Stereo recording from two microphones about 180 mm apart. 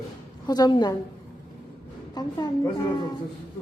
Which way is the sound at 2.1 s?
20° left (ahead or behind).